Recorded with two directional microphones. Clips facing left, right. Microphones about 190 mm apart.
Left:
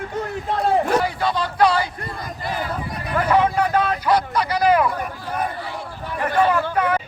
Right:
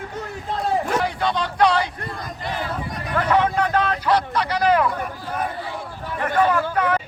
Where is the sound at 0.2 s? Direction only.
60° left (ahead or behind).